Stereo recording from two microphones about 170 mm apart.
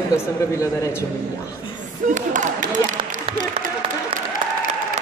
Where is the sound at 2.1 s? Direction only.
45° right (ahead or behind).